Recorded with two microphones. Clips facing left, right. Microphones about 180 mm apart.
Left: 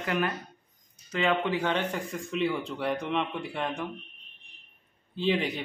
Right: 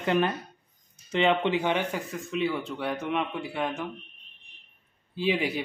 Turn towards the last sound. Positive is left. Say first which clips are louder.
# right 1 dB
turn(degrees=-10)  # may be behind; listen again after turning